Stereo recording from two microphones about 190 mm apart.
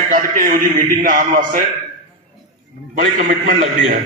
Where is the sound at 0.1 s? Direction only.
45° right (ahead or behind).